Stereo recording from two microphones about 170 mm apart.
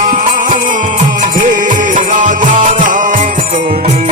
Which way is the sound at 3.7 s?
40° right (ahead or behind).